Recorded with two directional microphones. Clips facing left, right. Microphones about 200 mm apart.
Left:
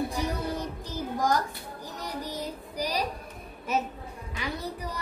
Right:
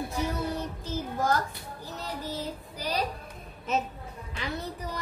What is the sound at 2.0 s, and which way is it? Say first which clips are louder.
Child singing: even; 15° left (ahead or behind).